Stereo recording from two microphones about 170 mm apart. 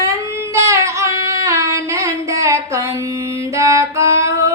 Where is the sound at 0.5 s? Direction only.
15° right (ahead or behind).